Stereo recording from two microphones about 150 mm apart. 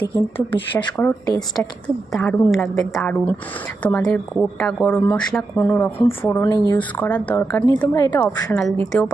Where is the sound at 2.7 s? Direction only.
20° left (ahead or behind).